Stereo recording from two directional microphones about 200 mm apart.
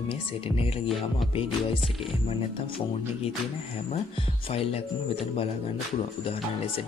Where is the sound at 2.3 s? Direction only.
25° left (ahead or behind).